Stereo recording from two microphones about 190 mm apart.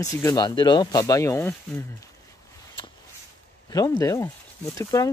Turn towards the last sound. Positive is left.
turn(degrees=20)  # may be behind; listen again after turning